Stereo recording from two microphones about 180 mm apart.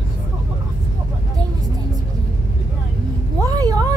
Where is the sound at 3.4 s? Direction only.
20° right (ahead or behind).